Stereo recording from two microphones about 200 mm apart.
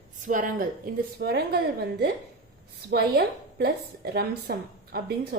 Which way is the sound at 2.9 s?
55° right (ahead or behind).